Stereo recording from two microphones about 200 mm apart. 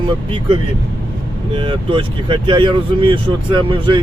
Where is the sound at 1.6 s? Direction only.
25° right (ahead or behind).